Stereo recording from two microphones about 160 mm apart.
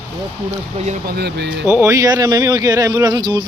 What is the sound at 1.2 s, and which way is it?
Speech, 90° right.